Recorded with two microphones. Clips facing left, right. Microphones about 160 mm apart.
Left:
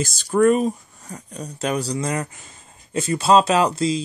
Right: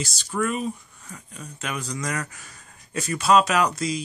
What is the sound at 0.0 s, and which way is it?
Speech, 45° left (ahead or behind).